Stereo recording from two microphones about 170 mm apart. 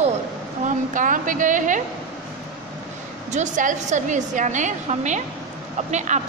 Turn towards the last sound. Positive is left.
turn(degrees=-45)  # may be behind; listen again after turning